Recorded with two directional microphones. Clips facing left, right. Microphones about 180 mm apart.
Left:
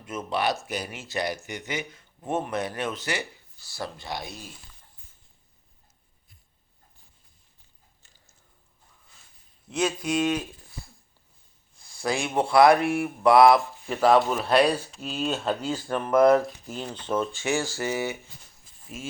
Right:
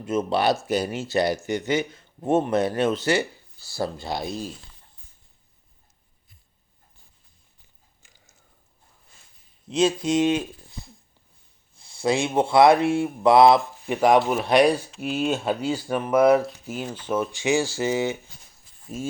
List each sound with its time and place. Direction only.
0.0 s speech: 25° right (ahead or behind)
9.6 s speech: 20° right (ahead or behind)
11.8 s speech: 25° right (ahead or behind)
18.9 s speech: 35° right (ahead or behind)